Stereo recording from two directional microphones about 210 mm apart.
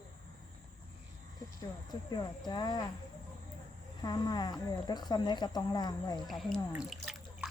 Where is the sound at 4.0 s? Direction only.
20° left (ahead or behind).